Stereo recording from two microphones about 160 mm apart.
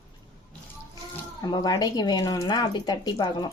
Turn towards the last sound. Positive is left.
turn(degrees=25)  # may be behind; listen again after turning